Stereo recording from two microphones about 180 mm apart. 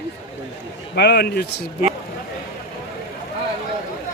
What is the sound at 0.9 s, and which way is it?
Speech, 65° left (ahead or behind).